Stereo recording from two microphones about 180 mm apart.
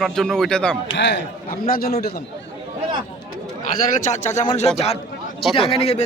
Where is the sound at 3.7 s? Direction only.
45° left (ahead or behind).